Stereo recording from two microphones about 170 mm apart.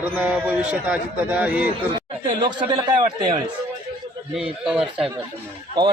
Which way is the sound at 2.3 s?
30° right (ahead or behind).